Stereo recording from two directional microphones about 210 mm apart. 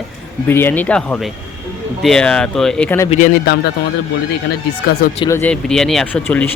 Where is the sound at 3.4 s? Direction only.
50° left (ahead or behind).